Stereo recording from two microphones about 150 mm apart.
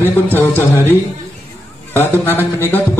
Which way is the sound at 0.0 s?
15° left (ahead or behind).